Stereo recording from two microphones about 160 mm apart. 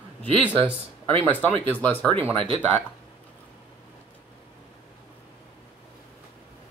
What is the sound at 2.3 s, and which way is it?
Speech, 35° right (ahead or behind).